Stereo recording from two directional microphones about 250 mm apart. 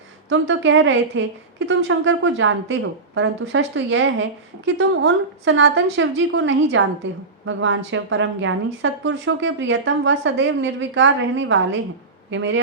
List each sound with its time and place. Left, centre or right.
0.3 s a woman's voice: right